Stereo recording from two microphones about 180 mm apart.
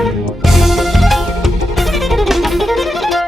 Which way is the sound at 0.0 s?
Centre (ahead or behind).